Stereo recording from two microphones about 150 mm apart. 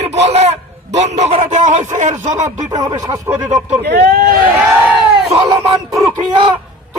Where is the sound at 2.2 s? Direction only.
55° right (ahead or behind).